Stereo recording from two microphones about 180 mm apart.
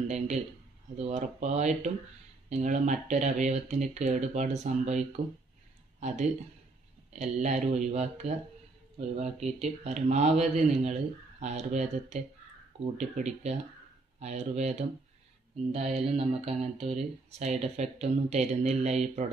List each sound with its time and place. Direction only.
0.9 s speech: 40° right (ahead or behind)